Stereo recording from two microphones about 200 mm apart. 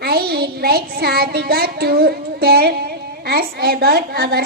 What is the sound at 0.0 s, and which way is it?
A woman's voice, 50° right (ahead or behind).